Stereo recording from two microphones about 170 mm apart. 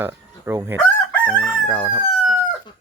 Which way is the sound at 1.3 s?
Centre (ahead or behind).